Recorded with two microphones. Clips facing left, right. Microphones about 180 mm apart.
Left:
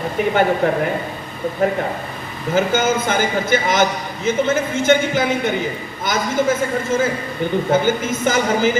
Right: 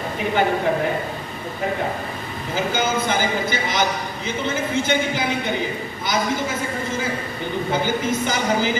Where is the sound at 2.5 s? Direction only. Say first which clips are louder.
Left 5 dB; 50° left (ahead or behind).